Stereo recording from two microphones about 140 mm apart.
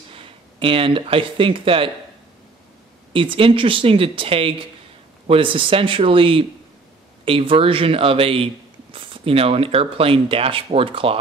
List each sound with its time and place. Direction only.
0.1 s speech: 40° right (ahead or behind)
3.1 s speech: 40° right (ahead or behind)